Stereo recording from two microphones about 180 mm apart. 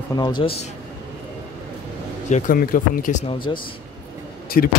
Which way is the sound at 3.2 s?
25° left (ahead or behind).